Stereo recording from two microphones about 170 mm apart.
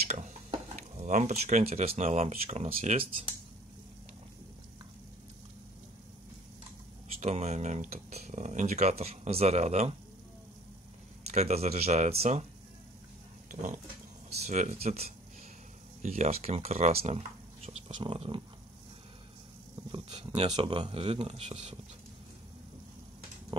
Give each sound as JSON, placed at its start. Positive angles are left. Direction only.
{"t": 0.1, "sound": "speech", "side_deg": -45}
{"t": 7.2, "sound": "speech", "side_deg": -40}
{"t": 11.2, "sound": "speech", "side_deg": -40}
{"t": 13.5, "sound": "pig", "side_deg": -50}
{"t": 14.4, "sound": "speech", "side_deg": -45}
{"t": 19.9, "sound": "speech", "side_deg": -25}
{"t": 23.5, "sound": "speech", "side_deg": -30}